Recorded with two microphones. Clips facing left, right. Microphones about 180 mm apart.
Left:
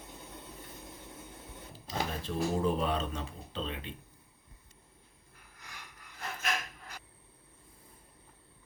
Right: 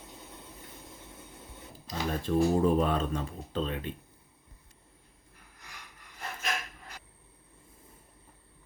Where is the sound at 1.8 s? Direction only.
45° right (ahead or behind).